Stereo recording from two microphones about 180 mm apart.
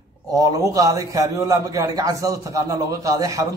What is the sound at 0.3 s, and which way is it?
A man's voice, 20° right (ahead or behind).